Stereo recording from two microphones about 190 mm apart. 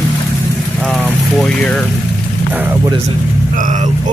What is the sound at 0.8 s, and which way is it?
Speech, 10° left (ahead or behind).